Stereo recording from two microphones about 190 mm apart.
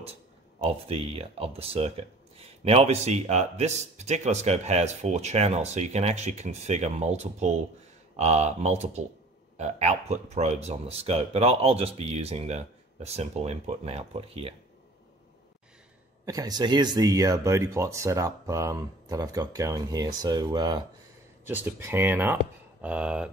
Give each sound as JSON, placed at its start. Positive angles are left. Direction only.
{"t": 0.0, "sound": "speech", "side_deg": -30}
{"t": 16.3, "sound": "speech", "side_deg": -20}
{"t": 21.5, "sound": "speech", "side_deg": -10}